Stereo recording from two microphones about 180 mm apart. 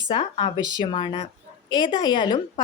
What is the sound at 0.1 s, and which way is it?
A woman's voice, 30° left (ahead or behind).